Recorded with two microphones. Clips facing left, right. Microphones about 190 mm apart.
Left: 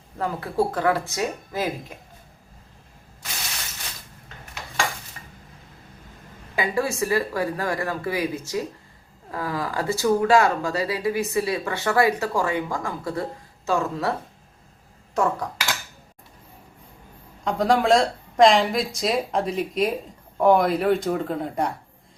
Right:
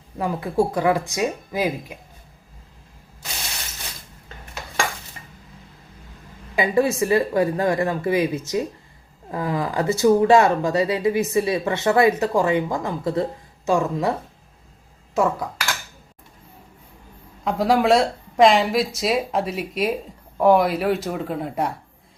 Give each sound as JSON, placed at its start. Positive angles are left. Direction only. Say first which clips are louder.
{"t": 0.2, "sound": "speech", "louder": "right 3 dB", "side_deg": -15}
{"t": 6.6, "sound": "speech", "louder": "right 5 dB", "side_deg": -20}
{"t": 15.1, "sound": "speech", "louder": "right 2 dB", "side_deg": -5}
{"t": 17.4, "sound": "a woman's voice", "louder": "right 2 dB", "side_deg": -5}